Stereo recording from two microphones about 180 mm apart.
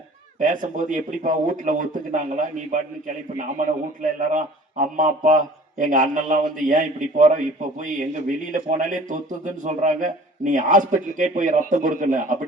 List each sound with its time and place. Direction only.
0.3 s a man's voice: 45° right (ahead or behind)